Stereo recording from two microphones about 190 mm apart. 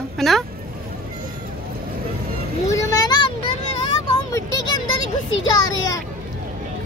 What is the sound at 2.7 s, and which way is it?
Vehicle, 15° left (ahead or behind).